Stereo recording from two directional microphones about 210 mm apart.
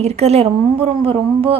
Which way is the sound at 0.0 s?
30° right (ahead or behind).